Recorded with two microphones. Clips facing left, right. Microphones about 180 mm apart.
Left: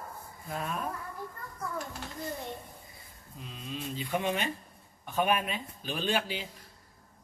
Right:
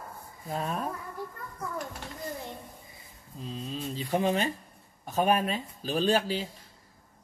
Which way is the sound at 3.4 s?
35° right (ahead or behind).